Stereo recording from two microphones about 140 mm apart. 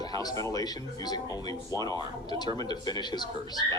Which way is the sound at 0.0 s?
30° left (ahead or behind).